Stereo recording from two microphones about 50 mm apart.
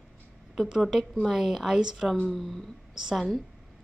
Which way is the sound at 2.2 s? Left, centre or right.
Centre.